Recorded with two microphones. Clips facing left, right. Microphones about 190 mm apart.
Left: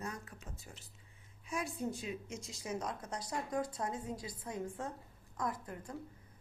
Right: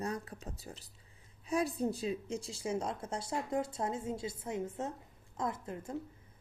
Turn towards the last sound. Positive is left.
turn(degrees=-25)  # may be behind; listen again after turning